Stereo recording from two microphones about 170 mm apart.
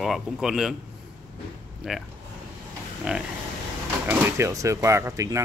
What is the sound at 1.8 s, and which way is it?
Speech, centre (ahead or behind).